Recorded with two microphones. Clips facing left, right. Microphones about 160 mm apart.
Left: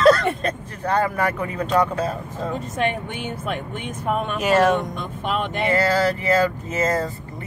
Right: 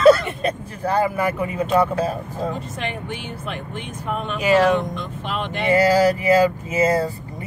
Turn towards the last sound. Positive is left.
turn(degrees=-10)  # may be behind; listen again after turning